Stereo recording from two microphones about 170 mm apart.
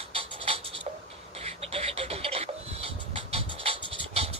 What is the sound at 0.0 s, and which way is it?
Writing, 35° right (ahead or behind).